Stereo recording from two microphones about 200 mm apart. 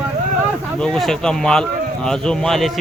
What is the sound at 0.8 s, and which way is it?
Speech, 5° left (ahead or behind).